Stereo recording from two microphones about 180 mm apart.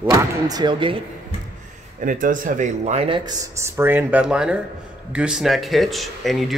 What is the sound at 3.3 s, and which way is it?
Speech, 15° right (ahead or behind).